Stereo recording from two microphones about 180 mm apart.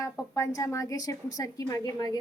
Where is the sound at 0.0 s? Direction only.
20° left (ahead or behind).